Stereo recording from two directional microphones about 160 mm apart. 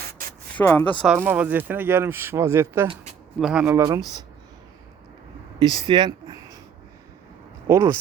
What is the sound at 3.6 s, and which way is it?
Speech, 15° right (ahead or behind).